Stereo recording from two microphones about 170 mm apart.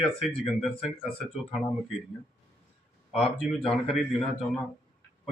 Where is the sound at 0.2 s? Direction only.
Centre (ahead or behind).